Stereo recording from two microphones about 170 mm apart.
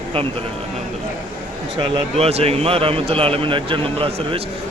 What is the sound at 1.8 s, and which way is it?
Speech, 35° right (ahead or behind).